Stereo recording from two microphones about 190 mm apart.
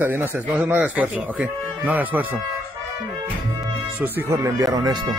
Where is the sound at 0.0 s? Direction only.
10° right (ahead or behind).